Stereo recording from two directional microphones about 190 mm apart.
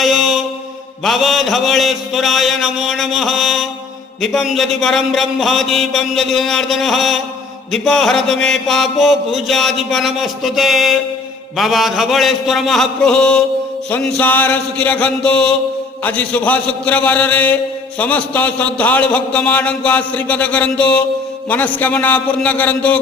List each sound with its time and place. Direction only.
0.0 s mantra: centre (ahead or behind)
13.9 s speech: 10° left (ahead or behind)